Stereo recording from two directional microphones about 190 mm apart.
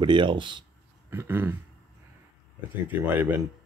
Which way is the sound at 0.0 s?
25° right (ahead or behind).